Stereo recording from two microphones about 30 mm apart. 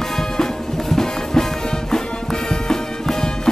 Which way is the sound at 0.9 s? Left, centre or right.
Centre.